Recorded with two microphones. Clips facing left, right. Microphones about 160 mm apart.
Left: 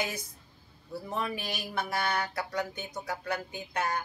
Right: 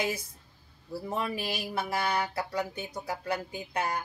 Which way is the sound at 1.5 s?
30° right (ahead or behind).